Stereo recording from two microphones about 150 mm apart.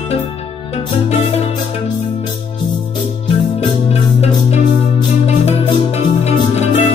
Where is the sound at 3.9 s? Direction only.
45° left (ahead or behind).